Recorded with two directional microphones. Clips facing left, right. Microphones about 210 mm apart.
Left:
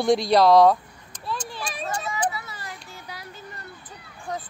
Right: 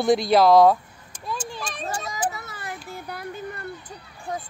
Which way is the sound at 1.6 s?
5° left (ahead or behind).